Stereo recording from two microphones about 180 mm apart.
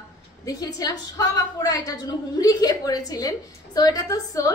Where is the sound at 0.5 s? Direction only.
20° left (ahead or behind).